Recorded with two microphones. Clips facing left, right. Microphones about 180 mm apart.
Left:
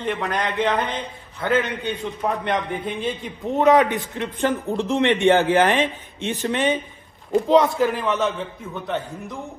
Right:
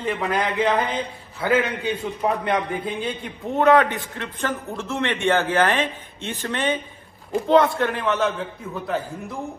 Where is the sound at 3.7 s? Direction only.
15° left (ahead or behind).